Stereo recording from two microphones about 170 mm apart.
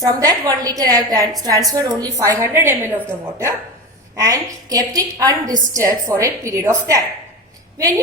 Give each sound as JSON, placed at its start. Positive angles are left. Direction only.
{"t": 0.0, "sound": "a woman's voice", "side_deg": -20}
{"t": 4.2, "sound": "a woman's voice", "side_deg": -20}